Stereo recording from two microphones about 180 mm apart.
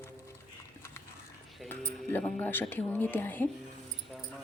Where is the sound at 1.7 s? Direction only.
10° left (ahead or behind).